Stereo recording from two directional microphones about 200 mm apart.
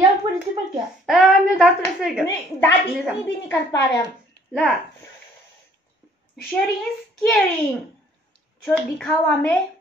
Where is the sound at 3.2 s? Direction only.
15° left (ahead or behind).